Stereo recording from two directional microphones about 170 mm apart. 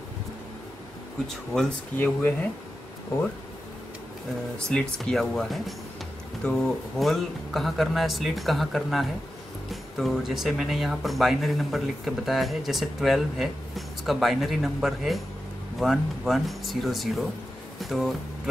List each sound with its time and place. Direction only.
1.2 s speech: 5° left (ahead or behind)
4.6 s speech: 5° left (ahead or behind)